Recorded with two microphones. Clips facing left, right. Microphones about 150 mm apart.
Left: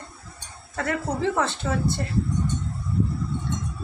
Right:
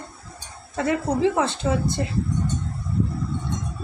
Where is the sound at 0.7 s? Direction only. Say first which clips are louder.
Right 4 dB; 15° right (ahead or behind).